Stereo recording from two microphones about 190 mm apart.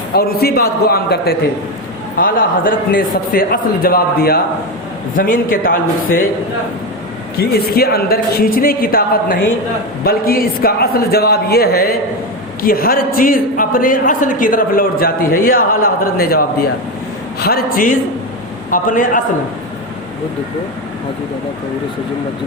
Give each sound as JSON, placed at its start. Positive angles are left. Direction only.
{"t": 0.1, "sound": "a man's voice", "side_deg": 55}
{"t": 7.3, "sound": "a man's voice", "side_deg": 55}
{"t": 17.4, "sound": "a man's voice", "side_deg": 50}